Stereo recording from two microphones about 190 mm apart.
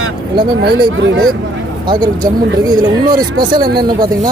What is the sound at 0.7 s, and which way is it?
Speech, 65° right (ahead or behind).